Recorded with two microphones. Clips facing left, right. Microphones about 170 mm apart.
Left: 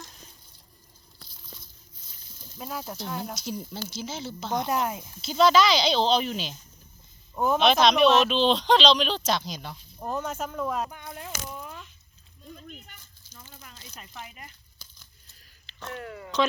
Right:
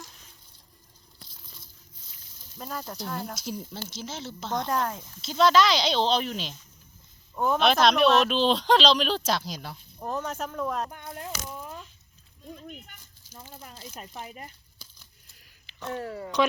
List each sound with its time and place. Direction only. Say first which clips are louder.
2.6 s speech: left 1 dB; 5° left (ahead or behind)
5.2 s speech: left 1 dB; centre (ahead or behind)
13.3 s a sound: right 5 dB; 35° right (ahead or behind)
13.9 s speech: right 2 dB; 40° right (ahead or behind)
15.9 s speech: right 5 dB; 35° right (ahead or behind)